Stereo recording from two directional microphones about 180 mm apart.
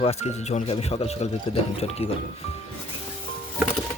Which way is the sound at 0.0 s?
35° left (ahead or behind).